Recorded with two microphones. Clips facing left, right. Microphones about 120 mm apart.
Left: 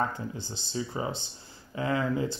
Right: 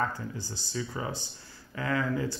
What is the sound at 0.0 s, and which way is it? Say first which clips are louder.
Speech: left 1 dB; 20° left (ahead or behind).